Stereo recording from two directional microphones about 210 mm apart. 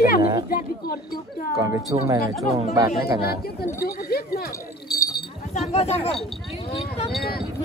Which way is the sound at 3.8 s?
45° left (ahead or behind).